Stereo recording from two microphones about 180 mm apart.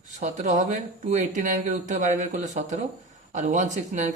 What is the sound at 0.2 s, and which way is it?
Speech, 40° right (ahead or behind).